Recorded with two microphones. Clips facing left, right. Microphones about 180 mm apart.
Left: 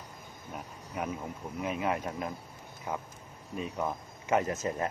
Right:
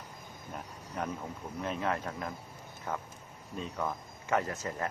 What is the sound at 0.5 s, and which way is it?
A man's voice, 10° left (ahead or behind).